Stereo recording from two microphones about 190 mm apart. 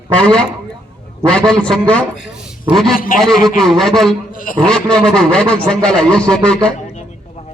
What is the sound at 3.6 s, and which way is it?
Speech, centre (ahead or behind).